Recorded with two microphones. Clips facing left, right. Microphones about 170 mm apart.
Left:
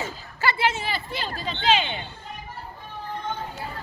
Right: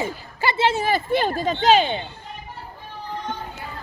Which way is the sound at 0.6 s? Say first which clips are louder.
Right 6 dB; 40° right (ahead or behind).